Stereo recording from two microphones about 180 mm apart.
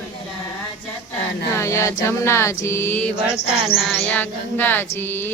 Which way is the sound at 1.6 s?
15° left (ahead or behind).